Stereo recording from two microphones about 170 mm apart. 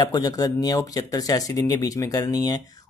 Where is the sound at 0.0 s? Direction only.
20° left (ahead or behind).